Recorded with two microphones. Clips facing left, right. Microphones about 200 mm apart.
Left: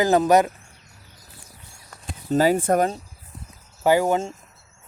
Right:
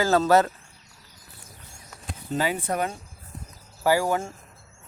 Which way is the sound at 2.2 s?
40° left (ahead or behind).